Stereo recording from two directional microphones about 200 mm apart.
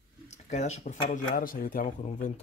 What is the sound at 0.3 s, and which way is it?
Speech, 35° left (ahead or behind).